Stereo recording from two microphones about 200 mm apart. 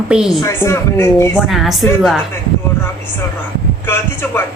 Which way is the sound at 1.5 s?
Centre (ahead or behind).